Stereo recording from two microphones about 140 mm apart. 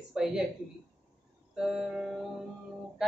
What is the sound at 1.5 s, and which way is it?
Speech, 5° right (ahead or behind).